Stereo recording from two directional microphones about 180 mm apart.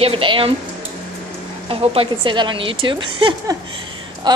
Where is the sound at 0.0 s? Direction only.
30° right (ahead or behind).